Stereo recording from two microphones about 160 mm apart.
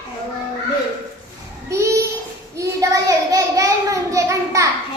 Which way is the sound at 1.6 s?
20° right (ahead or behind).